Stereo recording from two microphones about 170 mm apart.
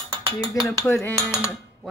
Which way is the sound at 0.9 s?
15° left (ahead or behind).